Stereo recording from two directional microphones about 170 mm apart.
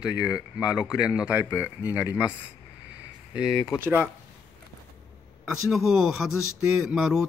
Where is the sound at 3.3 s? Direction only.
5° right (ahead or behind).